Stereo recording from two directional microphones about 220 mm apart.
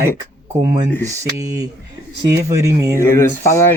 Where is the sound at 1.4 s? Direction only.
15° right (ahead or behind).